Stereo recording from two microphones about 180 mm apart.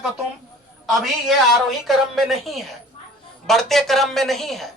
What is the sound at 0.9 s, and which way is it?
Speech, centre (ahead or behind).